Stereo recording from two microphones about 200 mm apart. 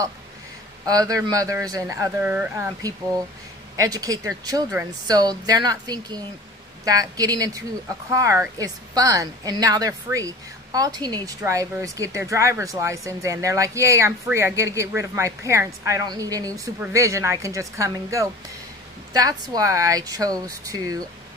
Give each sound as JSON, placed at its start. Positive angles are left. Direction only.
{"t": 0.9, "sound": "a woman's voice", "side_deg": -20}